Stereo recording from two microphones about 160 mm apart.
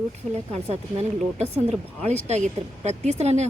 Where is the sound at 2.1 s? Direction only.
45° right (ahead or behind).